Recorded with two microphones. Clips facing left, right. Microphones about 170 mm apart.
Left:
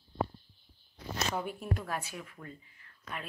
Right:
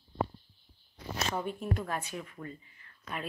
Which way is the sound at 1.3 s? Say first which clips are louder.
Right 2 dB; 5° left (ahead or behind).